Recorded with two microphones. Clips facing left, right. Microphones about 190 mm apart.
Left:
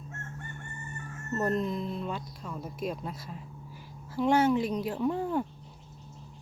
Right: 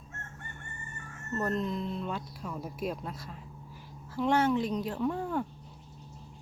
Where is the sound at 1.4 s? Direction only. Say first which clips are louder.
Left 2 dB; 10° left (ahead or behind).